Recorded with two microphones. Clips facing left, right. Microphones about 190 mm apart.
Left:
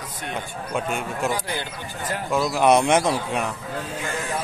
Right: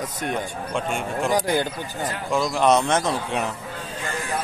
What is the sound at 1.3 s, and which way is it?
Speech, 45° right (ahead or behind).